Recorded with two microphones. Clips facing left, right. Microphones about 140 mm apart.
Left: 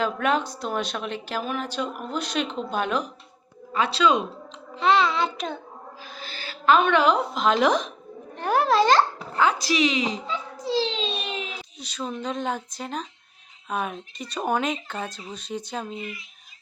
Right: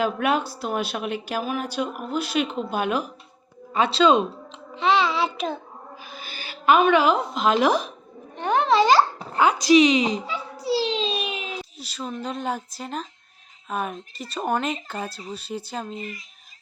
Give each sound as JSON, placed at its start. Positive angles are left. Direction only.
{"t": 0.0, "sound": "a woman's voice", "side_deg": -10}
{"t": 3.7, "sound": "speech", "side_deg": -25}
{"t": 4.7, "sound": "a sound", "side_deg": 0}
{"t": 6.0, "sound": "a woman's voice", "side_deg": -10}
{"t": 10.2, "sound": "a child's voice", "side_deg": -10}
{"t": 16.0, "sound": "speech", "side_deg": -40}